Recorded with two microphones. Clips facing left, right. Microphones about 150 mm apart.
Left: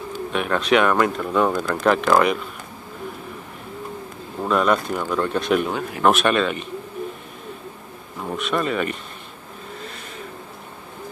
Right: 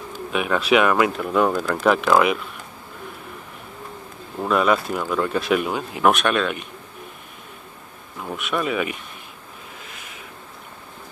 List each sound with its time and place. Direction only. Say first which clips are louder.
0.3 s speech: right 1 dB; 5° right (ahead or behind)
4.4 s speech: even; 5° right (ahead or behind)
8.2 s speech: left 2 dB; centre (ahead or behind)
9.8 s vehicle: left 5 dB; 5° right (ahead or behind)